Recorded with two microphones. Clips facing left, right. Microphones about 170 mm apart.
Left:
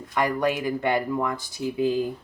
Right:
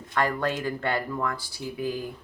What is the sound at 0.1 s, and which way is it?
Speech, 15° left (ahead or behind).